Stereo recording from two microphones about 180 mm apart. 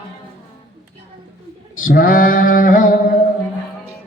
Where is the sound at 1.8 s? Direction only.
50° left (ahead or behind).